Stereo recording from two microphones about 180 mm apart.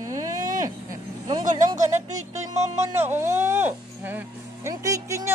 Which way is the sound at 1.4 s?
45° right (ahead or behind).